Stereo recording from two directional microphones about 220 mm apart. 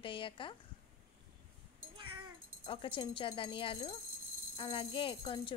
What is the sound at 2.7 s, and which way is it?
Speech, 20° left (ahead or behind).